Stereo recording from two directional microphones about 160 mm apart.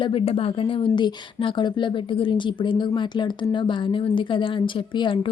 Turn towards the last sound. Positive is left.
turn(degrees=30)  # may be behind; listen again after turning